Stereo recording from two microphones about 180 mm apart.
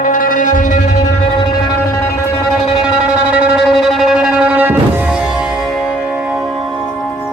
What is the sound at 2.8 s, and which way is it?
Music, 5° right (ahead or behind).